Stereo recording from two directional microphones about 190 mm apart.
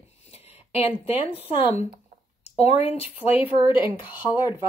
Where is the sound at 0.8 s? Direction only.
10° right (ahead or behind).